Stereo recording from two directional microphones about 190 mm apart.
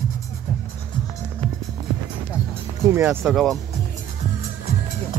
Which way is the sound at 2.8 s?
10° right (ahead or behind).